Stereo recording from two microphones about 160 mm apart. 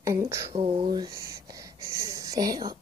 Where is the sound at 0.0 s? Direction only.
20° right (ahead or behind).